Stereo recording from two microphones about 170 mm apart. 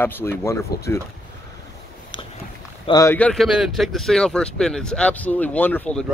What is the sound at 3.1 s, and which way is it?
Speech, 10° left (ahead or behind).